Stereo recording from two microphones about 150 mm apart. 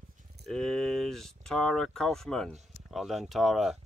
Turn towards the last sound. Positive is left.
turn(degrees=0)  # may be behind; listen again after turning